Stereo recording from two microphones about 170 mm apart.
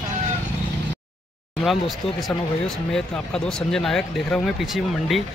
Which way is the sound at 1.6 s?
Centre (ahead or behind).